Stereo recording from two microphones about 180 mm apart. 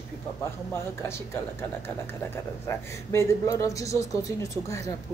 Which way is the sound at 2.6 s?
15° left (ahead or behind).